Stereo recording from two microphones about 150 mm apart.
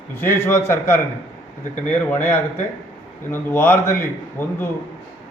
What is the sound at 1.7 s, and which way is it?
Speech, 55° left (ahead or behind).